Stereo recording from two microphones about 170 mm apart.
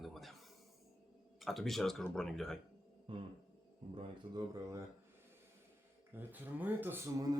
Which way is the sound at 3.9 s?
20° right (ahead or behind).